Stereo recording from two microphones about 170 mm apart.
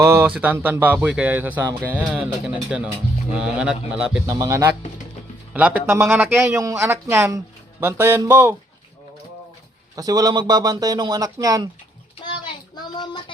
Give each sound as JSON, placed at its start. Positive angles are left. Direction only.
{"t": 0.0, "sound": "a man's voice", "side_deg": -15}
{"t": 4.3, "sound": "a man's voice", "side_deg": -15}
{"t": 9.9, "sound": "speech", "side_deg": -20}
{"t": 12.2, "sound": "child singing", "side_deg": 25}